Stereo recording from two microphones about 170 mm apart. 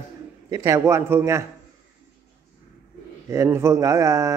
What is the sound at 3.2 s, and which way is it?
A man's voice, 15° right (ahead or behind).